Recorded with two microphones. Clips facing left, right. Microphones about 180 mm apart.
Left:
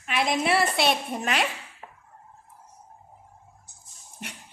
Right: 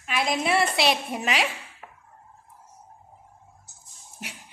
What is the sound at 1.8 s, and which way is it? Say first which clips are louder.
Chop: left 1 dB; 25° left (ahead or behind).